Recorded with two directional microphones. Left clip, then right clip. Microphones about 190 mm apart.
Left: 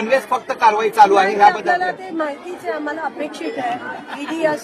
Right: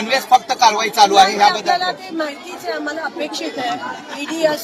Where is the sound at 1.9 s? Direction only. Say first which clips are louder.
Even; centre (ahead or behind).